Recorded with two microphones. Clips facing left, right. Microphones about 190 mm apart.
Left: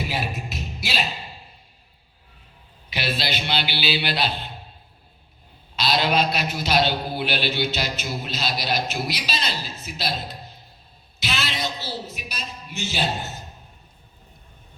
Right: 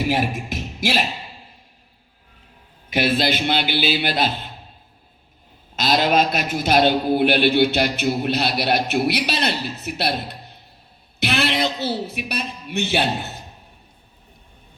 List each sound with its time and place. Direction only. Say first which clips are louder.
0.0 s a man's voice: right 7 dB; 50° right (ahead or behind)
2.9 s a man's voice: right 8 dB; 50° right (ahead or behind)
5.7 s a man's voice: right 4 dB; 50° right (ahead or behind); by 13.1 s 65° right (ahead or behind)